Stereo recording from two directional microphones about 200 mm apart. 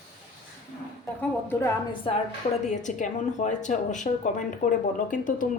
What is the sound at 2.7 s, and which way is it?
A woman's voice, 40° left (ahead or behind).